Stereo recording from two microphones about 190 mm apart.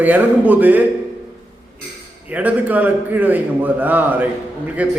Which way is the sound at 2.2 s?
10° right (ahead or behind).